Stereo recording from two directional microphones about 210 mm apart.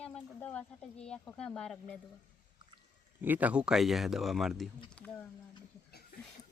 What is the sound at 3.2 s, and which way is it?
Speech, 10° right (ahead or behind).